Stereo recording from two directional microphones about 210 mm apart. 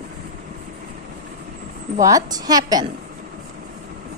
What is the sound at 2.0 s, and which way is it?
Speech, 15° right (ahead or behind).